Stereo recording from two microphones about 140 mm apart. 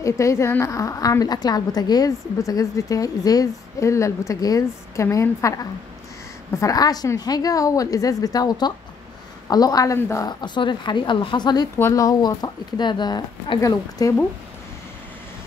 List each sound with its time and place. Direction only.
0.0 s a woman's voice: 20° left (ahead or behind)
10.2 s a woman's voice: 35° left (ahead or behind)